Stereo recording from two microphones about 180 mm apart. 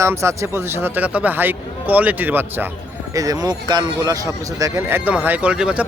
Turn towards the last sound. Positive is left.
turn(degrees=-5)  # may be behind; listen again after turning